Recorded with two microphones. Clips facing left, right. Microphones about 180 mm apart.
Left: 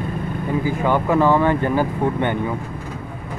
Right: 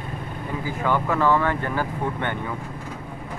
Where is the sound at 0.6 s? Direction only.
15° left (ahead or behind).